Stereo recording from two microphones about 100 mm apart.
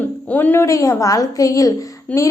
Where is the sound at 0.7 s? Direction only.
35° left (ahead or behind).